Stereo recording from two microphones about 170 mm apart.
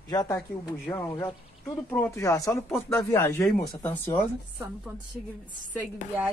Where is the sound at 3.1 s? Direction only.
15° left (ahead or behind).